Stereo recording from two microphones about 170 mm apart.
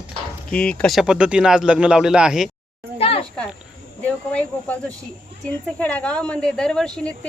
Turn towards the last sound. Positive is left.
turn(degrees=5)  # may be behind; listen again after turning